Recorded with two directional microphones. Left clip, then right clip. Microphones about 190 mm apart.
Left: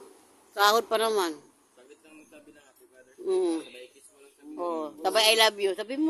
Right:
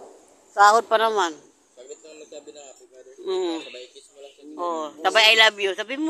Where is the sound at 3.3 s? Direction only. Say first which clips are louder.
Right 1 dB; 20° left (ahead or behind).